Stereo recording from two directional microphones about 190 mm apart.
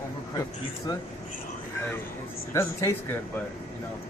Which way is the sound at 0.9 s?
20° left (ahead or behind).